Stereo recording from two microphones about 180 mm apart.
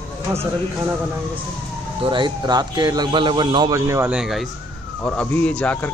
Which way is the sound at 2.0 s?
25° right (ahead or behind).